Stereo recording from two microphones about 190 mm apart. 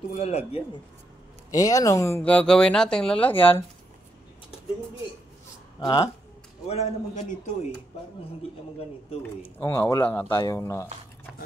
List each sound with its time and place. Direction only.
0.1 s a man's voice: 35° left (ahead or behind)
1.5 s speech: 20° left (ahead or behind)
5.8 s speech: 20° left (ahead or behind)
6.7 s a man's voice: 35° left (ahead or behind)
9.6 s speech: 15° left (ahead or behind)